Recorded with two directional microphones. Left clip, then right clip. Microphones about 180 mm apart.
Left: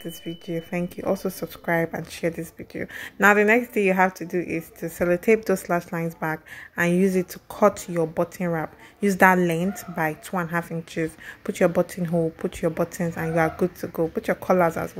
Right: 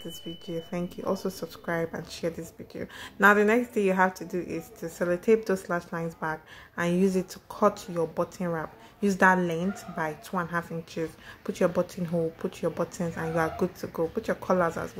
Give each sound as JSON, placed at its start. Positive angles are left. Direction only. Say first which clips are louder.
{"t": 0.5, "sound": "speech", "louder": "left 5 dB", "side_deg": 20}